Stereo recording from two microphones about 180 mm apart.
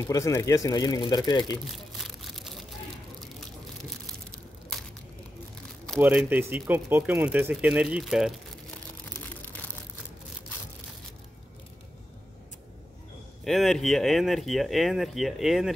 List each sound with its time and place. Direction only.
0.0 s speech: 15° left (ahead or behind)
2.0 s a sound: centre (ahead or behind)
5.9 s speech: 10° right (ahead or behind)
13.4 s speech: centre (ahead or behind)